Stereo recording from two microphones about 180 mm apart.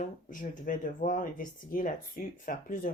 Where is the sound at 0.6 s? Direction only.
45° left (ahead or behind).